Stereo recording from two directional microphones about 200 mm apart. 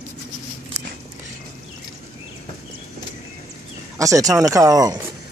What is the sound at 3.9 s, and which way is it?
Speech, 15° right (ahead or behind).